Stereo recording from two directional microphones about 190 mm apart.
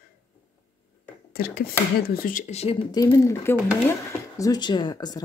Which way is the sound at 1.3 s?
55° left (ahead or behind).